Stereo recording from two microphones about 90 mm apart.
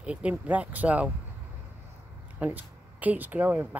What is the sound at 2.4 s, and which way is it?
Speech, 20° right (ahead or behind).